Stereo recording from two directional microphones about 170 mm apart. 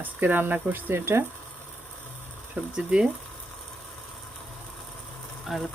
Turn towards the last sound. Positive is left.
turn(degrees=0)  # may be behind; listen again after turning